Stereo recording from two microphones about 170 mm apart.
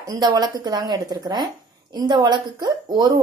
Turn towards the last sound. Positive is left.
turn(degrees=-25)  # may be behind; listen again after turning